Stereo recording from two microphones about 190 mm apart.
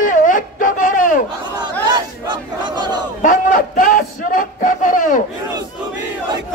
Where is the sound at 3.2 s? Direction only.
45° left (ahead or behind).